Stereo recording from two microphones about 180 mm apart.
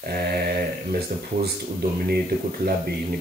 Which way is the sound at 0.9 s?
60° right (ahead or behind).